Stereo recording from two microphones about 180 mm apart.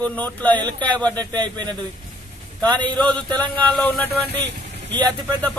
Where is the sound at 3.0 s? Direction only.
5° left (ahead or behind).